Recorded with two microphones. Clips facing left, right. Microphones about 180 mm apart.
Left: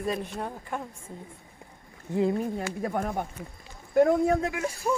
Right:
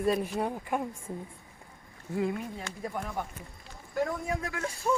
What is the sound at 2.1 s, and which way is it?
Speech, 30° left (ahead or behind).